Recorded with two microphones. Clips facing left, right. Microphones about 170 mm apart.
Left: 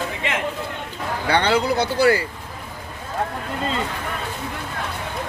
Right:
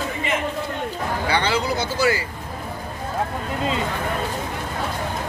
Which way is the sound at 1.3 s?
60° left (ahead or behind).